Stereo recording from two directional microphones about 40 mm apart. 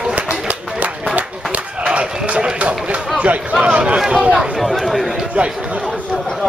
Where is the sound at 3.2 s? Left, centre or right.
Right.